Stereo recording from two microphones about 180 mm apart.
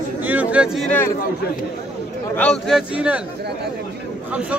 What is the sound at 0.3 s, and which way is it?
Speech, 10° right (ahead or behind).